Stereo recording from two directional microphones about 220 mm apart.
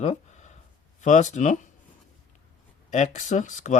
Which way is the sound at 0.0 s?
30° left (ahead or behind).